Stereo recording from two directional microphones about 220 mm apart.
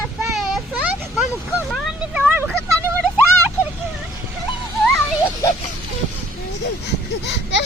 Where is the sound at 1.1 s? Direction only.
5° right (ahead or behind).